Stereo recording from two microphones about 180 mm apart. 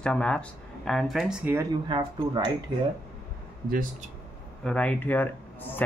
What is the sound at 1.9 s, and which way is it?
Speech, 25° right (ahead or behind).